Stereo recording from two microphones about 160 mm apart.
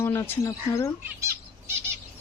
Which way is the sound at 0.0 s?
15° left (ahead or behind).